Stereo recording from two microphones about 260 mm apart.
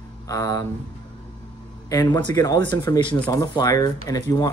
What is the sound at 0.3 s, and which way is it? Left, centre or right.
Speech, centre.